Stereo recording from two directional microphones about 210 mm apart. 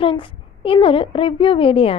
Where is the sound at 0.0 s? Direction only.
25° left (ahead or behind).